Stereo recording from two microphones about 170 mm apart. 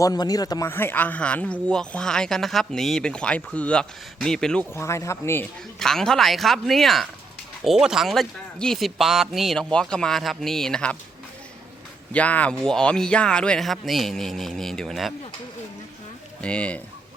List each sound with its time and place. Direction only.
0.0 s a man's voice: 20° left (ahead or behind); by 4.6 s 5° left (ahead or behind)
4.7 s a man's voice: 15° left (ahead or behind)
5.8 s speech: 5° left (ahead or behind)
12.1 s speech: 10° left (ahead or behind)
16.4 s a man's voice: 5° left (ahead or behind)